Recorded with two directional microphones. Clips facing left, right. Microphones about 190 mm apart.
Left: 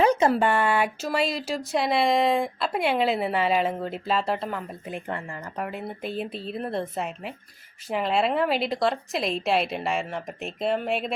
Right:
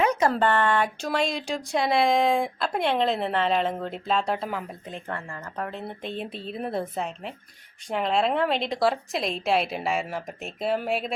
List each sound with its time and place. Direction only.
0.0 s a sound: 30° left (ahead or behind)
0.3 s speech: 10° left (ahead or behind)
4.9 s speech: 15° left (ahead or behind)